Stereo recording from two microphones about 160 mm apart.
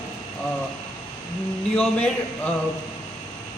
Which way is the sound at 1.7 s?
10° left (ahead or behind).